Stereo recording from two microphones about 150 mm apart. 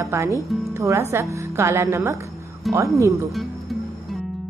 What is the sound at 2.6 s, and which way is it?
Speech, centre (ahead or behind).